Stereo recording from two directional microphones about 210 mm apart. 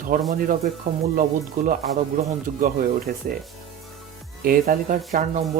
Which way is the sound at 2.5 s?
40° right (ahead or behind).